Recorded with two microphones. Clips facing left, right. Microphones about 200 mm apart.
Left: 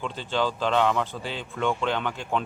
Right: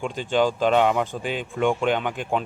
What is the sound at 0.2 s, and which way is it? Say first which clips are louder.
Speech: right 6 dB; 15° right (ahead or behind).